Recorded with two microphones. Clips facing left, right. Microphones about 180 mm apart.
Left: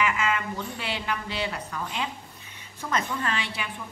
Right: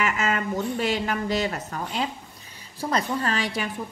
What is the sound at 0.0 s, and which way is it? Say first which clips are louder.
A woman's voice: right 1 dB; 40° right (ahead or behind).